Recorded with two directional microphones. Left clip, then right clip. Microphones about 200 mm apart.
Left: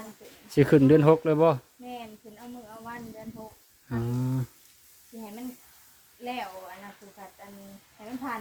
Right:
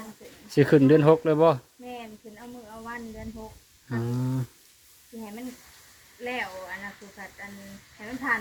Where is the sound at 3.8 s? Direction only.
10° left (ahead or behind).